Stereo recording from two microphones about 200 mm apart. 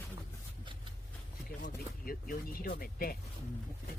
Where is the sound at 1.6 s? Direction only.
45° left (ahead or behind).